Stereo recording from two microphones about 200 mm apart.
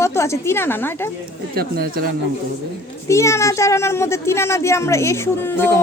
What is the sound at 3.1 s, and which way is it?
A woman's voice, 15° left (ahead or behind).